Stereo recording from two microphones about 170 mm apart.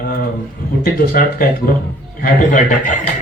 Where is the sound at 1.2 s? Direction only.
60° left (ahead or behind).